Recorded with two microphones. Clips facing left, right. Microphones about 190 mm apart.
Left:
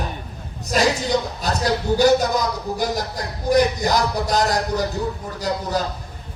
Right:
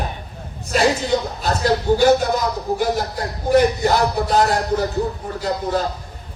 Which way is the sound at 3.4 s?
40° left (ahead or behind).